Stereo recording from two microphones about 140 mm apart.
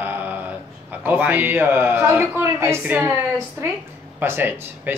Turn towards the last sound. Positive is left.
turn(degrees=-15)  # may be behind; listen again after turning